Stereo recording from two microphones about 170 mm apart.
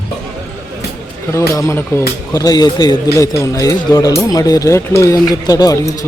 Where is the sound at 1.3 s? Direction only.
15° left (ahead or behind).